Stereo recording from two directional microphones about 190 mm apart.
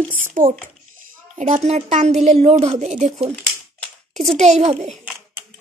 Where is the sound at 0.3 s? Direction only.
40° right (ahead or behind).